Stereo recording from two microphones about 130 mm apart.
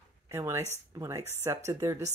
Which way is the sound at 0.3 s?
20° right (ahead or behind).